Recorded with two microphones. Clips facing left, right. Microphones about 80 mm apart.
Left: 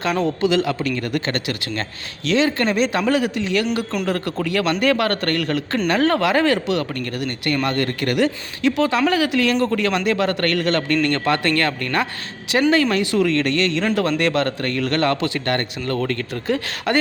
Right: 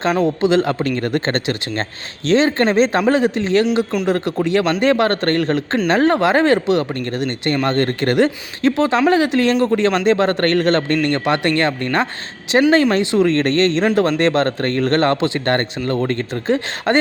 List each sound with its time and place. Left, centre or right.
0.0 s speech: right